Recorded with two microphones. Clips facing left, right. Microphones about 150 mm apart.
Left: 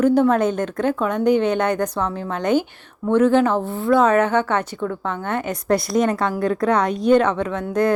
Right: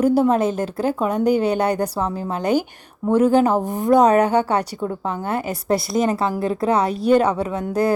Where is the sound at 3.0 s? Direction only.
10° right (ahead or behind).